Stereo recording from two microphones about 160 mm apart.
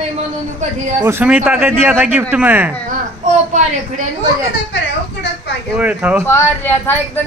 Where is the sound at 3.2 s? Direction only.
50° right (ahead or behind).